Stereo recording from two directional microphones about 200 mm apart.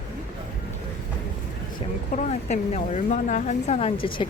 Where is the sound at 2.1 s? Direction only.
35° left (ahead or behind).